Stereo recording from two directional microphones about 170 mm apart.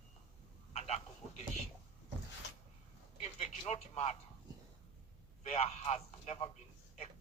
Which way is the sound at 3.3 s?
35° left (ahead or behind).